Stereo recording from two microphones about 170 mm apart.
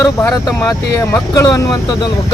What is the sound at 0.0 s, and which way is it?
Speech, 15° left (ahead or behind).